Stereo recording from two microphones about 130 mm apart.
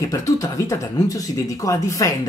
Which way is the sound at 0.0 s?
25° left (ahead or behind).